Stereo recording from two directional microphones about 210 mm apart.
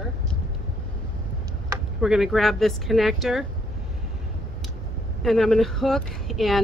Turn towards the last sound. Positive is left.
turn(degrees=0)  # may be behind; listen again after turning